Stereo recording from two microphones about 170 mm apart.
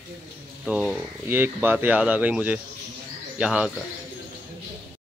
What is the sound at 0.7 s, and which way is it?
A man's voice, 5° right (ahead or behind).